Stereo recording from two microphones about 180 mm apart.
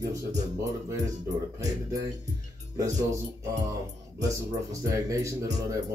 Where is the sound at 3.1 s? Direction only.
20° right (ahead or behind).